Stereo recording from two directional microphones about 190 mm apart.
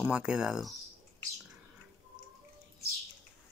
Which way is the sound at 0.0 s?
5° right (ahead or behind).